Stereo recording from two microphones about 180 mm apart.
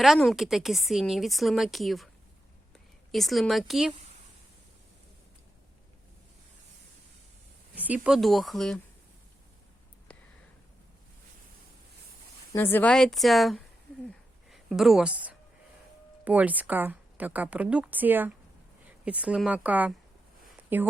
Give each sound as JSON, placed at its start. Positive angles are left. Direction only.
{"t": 0.0, "sound": "a woman's voice", "side_deg": 0}
{"t": 7.8, "sound": "a woman's voice", "side_deg": -5}
{"t": 12.5, "sound": "a woman's voice", "side_deg": 10}